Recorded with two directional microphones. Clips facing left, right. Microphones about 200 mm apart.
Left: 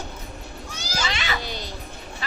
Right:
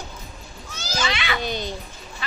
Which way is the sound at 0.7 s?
10° left (ahead or behind).